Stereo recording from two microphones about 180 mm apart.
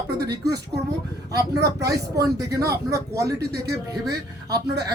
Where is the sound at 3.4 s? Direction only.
60° right (ahead or behind).